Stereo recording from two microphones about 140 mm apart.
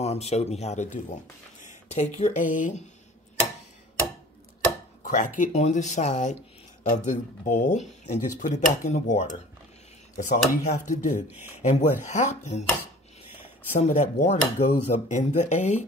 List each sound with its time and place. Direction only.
0.0 s speech: 50° left (ahead or behind)
5.0 s speech: 65° left (ahead or behind)
11.3 s speech: 15° right (ahead or behind)
11.6 s speech: 55° left (ahead or behind)
13.7 s speech: 55° left (ahead or behind)